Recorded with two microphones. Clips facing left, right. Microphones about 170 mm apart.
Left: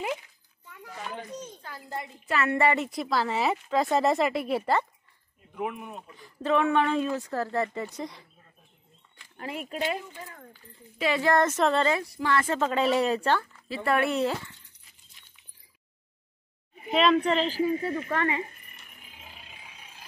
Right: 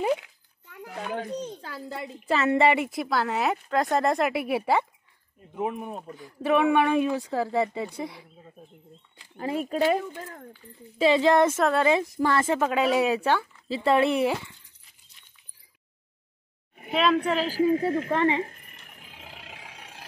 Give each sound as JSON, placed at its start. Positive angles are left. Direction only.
{"t": 0.2, "sound": "a sound", "side_deg": -70}
{"t": 2.2, "sound": "speech", "side_deg": -25}
{"t": 2.9, "sound": "speech", "side_deg": 0}
{"t": 5.5, "sound": "speech", "side_deg": -30}
{"t": 6.1, "sound": "speech", "side_deg": 0}
{"t": 6.5, "sound": "speech", "side_deg": -15}
{"t": 9.4, "sound": "speech", "side_deg": -35}
{"t": 11.0, "sound": "a woman's voice", "side_deg": -25}
{"t": 13.8, "sound": "speech", "side_deg": -15}
{"t": 16.9, "sound": "speech", "side_deg": 0}
{"t": 17.6, "sound": "speech", "side_deg": -85}
{"t": 18.1, "sound": "a woman's voice", "side_deg": -30}
{"t": 18.9, "sound": "vehicle", "side_deg": -85}